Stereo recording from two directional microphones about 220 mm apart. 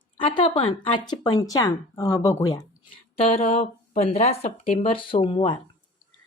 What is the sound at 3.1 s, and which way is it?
A woman's voice, 30° left (ahead or behind).